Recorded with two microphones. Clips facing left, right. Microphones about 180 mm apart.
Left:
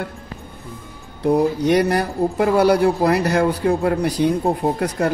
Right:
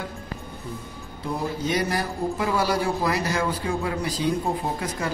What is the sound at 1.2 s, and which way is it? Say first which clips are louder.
Speech: left 11 dB; 65° left (ahead or behind).